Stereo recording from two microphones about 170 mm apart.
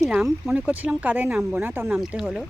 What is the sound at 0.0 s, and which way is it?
Speech, centre (ahead or behind).